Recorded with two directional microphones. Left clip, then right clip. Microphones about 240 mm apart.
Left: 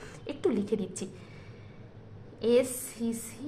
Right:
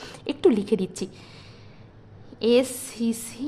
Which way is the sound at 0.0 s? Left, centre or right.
Right.